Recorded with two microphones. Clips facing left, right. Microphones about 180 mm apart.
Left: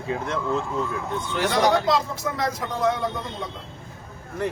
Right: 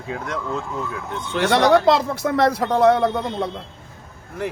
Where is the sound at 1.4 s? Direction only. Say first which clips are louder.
Right 5 dB; 70° right (ahead or behind).